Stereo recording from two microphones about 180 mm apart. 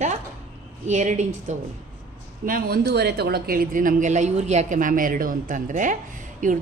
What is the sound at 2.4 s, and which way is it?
A woman's voice, 55° right (ahead or behind).